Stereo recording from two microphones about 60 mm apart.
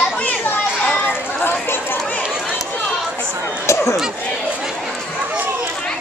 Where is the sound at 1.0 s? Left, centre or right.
Left.